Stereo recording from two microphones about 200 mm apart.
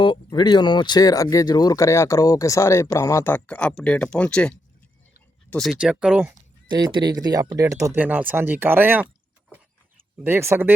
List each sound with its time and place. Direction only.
0.0 s speech: 20° left (ahead or behind); by 6.3 s 5° right (ahead or behind)
6.7 s speech: 20° right (ahead or behind)
10.2 s speech: 10° right (ahead or behind)